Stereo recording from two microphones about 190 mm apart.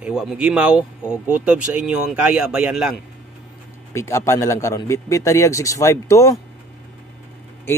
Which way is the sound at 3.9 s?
15° left (ahead or behind).